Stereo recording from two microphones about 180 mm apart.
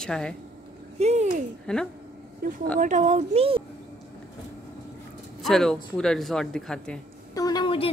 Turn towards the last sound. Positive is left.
turn(degrees=25)  # may be behind; listen again after turning